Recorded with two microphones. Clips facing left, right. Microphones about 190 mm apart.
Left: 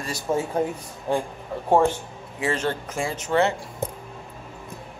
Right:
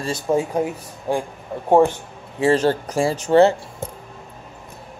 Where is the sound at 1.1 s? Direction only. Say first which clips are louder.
Right 2 dB; 15° right (ahead or behind).